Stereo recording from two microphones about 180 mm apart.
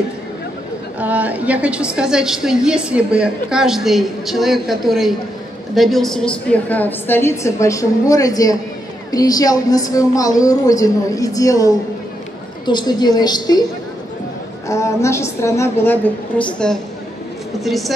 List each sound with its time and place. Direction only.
0.9 s a woman's voice: 10° right (ahead or behind); by 13.7 s 20° left (ahead or behind)
14.7 s a woman's voice: 15° left (ahead or behind); by 17.9 s centre (ahead or behind)